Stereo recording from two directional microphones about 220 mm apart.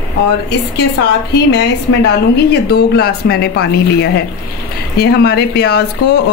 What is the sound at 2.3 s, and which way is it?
Speech, 45° left (ahead or behind).